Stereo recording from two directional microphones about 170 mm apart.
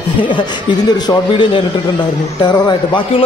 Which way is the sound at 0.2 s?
25° left (ahead or behind).